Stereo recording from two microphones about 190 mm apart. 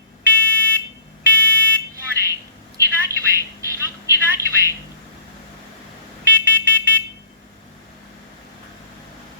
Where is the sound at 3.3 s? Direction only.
15° right (ahead or behind).